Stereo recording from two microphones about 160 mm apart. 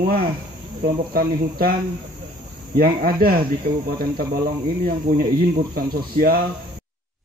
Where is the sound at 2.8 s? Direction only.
65° right (ahead or behind).